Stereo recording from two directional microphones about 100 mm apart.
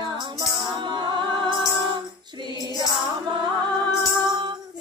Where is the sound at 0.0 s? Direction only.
55° right (ahead or behind).